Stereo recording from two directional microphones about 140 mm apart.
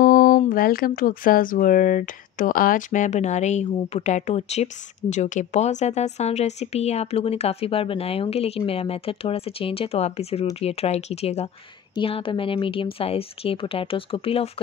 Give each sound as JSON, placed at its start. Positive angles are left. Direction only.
{"t": 0.0, "sound": "speech", "side_deg": 90}
{"t": 11.9, "sound": "speech", "side_deg": 40}